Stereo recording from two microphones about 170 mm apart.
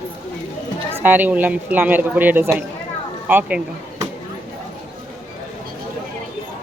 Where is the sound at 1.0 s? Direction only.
10° right (ahead or behind).